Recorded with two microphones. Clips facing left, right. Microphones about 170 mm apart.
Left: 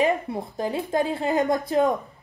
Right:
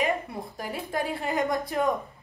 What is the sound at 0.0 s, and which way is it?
Speech, 25° left (ahead or behind).